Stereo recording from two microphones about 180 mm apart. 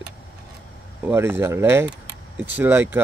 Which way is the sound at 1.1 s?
10° right (ahead or behind).